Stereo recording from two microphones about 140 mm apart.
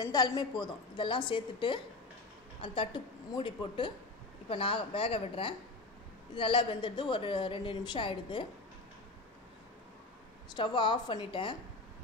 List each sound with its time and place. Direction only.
0.0 s a woman's voice: 25° left (ahead or behind)
10.5 s a woman's voice: 35° left (ahead or behind)